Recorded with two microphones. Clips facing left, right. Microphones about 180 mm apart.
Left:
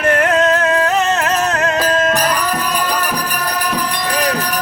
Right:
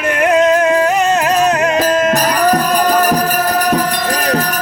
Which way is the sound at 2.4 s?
45° right (ahead or behind).